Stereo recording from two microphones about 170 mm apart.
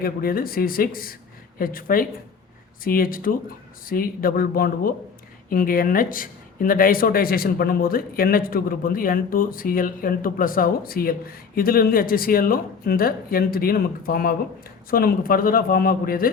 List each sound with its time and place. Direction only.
0.0 s speech: 60° left (ahead or behind)